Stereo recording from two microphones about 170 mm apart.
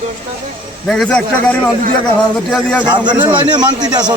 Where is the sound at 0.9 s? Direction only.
5° left (ahead or behind).